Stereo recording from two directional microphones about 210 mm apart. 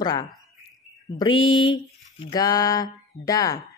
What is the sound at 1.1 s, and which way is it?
Mantra, 20° left (ahead or behind).